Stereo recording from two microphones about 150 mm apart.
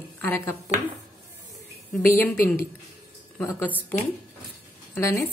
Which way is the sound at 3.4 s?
15° left (ahead or behind).